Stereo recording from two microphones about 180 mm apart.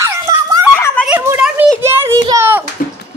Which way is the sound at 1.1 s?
10° right (ahead or behind).